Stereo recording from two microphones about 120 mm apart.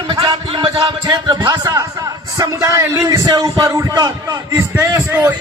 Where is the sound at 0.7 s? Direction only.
35° right (ahead or behind).